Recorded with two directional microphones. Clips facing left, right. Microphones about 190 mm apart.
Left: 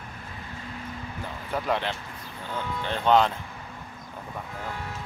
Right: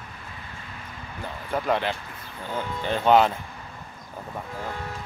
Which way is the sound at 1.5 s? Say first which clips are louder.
Right 3 dB; centre (ahead or behind).